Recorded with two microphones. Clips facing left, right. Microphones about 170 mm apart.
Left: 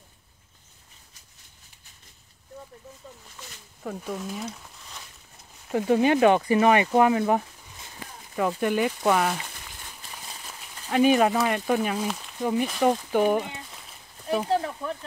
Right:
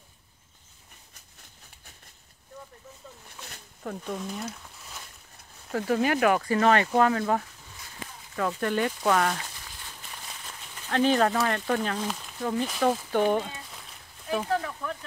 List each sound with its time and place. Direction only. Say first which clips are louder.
3.8 s speech: left 1 dB; 5° left (ahead or behind)
5.7 s speech: left 4 dB; 15° left (ahead or behind)
10.9 s speech: left 3 dB; 10° left (ahead or behind)
14.5 s speech: left 3 dB; 25° left (ahead or behind)